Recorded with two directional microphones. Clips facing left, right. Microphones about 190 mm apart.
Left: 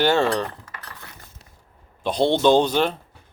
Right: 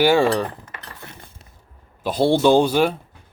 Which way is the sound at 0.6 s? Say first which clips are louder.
Right 2 dB; 25° right (ahead or behind).